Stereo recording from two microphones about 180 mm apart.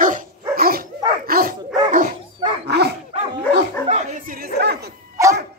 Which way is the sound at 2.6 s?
65° right (ahead or behind).